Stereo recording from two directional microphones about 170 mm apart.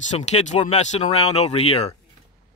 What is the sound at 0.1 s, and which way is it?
Speech, 45° left (ahead or behind).